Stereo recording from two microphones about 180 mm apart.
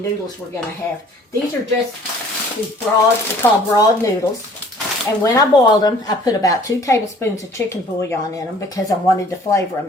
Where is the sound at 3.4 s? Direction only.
15° left (ahead or behind).